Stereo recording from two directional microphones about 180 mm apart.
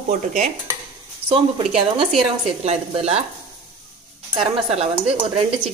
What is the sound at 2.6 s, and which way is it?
Speech, 35° right (ahead or behind).